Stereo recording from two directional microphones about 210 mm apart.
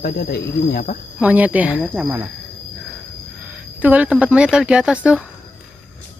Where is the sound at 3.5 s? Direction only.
5° right (ahead or behind).